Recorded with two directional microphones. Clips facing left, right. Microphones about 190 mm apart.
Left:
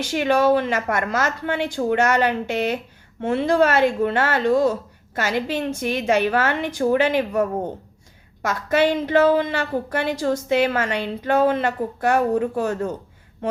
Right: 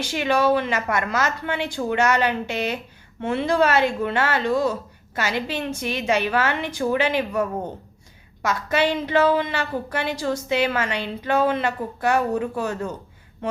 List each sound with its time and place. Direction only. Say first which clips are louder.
0.0 s a woman's voice: left 2 dB; 50° left (ahead or behind)